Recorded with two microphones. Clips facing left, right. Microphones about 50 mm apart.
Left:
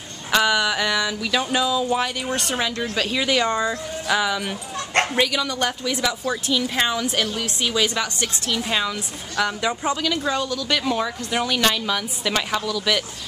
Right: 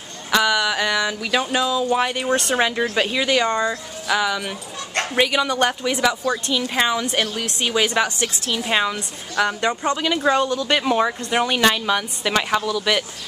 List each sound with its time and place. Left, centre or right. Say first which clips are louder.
0.3 s speech: right 1 dB; centre
1.4 s speech: even; centre
2.0 s a woman's voice: right 5 dB; centre
2.9 s speech: right 2 dB; centre
5.1 s a woman's voice: right 3 dB; right
6.2 s speech: right 2 dB; centre
6.5 s speech: even; centre
7.6 s a woman's voice: right 3 dB; centre
9.4 s speech: right 3 dB; centre
10.0 s a woman's voice: right 5 dB; right